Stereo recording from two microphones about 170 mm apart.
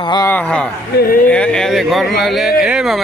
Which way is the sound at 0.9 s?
60° left (ahead or behind).